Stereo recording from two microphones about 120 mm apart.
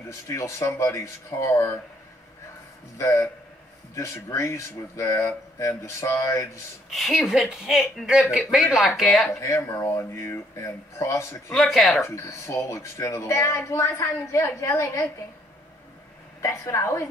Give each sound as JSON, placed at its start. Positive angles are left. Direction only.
{"t": 0.1, "sound": "speech", "side_deg": 25}
{"t": 3.0, "sound": "speech", "side_deg": 25}
{"t": 6.9, "sound": "speech", "side_deg": 0}
{"t": 9.4, "sound": "speech", "side_deg": 25}
{"t": 11.5, "sound": "speech", "side_deg": 0}
{"t": 12.2, "sound": "speech", "side_deg": 25}
{"t": 16.3, "sound": "speech", "side_deg": 25}